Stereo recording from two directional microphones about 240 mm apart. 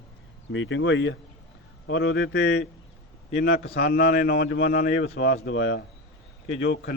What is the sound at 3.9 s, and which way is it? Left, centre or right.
A man's voice, left.